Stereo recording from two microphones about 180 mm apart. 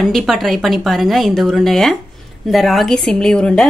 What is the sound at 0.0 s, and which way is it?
A woman's voice, centre (ahead or behind).